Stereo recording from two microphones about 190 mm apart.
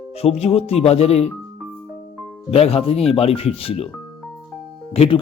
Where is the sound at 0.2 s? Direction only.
30° left (ahead or behind).